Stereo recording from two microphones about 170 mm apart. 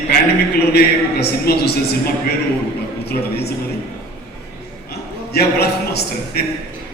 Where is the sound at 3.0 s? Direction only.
70° left (ahead or behind).